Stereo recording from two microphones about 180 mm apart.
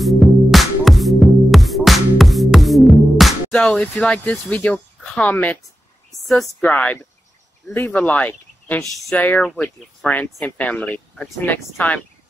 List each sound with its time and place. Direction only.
0.0 s music: centre (ahead or behind)
6.1 s speech: centre (ahead or behind)